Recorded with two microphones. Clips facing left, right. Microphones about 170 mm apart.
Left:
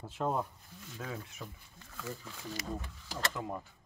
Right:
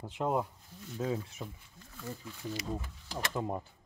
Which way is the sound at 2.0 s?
90° left.